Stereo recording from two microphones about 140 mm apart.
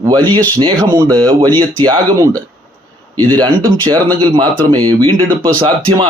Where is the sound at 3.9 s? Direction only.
35° right (ahead or behind).